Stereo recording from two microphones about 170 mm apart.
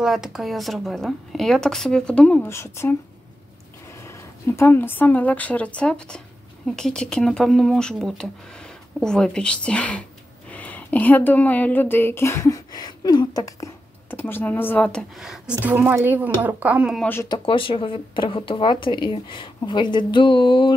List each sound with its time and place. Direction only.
0.0 s speech: centre (ahead or behind); by 3.0 s 15° left (ahead or behind)
4.5 s a woman's voice: 15° left (ahead or behind); by 17.0 s 5° right (ahead or behind)
17.0 s speech: 15° left (ahead or behind)
17.3 s speech: 30° left (ahead or behind)